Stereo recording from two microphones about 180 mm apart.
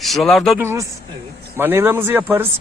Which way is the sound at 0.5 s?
15° right (ahead or behind).